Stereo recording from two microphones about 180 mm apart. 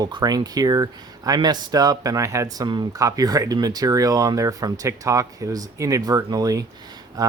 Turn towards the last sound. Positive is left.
turn(degrees=-20)  # may be behind; listen again after turning